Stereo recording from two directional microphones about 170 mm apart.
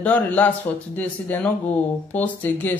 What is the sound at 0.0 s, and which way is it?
A woman's voice, 10° left (ahead or behind).